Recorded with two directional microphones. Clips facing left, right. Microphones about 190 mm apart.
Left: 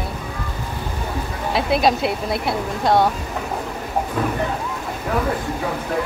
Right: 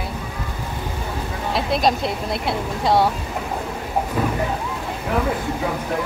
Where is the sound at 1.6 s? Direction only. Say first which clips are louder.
Left 2 dB; 5° left (ahead or behind).